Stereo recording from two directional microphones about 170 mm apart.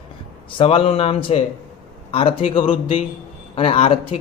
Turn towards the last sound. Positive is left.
turn(degrees=35)  # may be behind; listen again after turning